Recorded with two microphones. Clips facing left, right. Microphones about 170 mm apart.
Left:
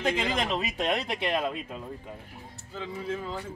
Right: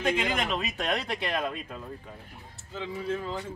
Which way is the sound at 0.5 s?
25° left (ahead or behind).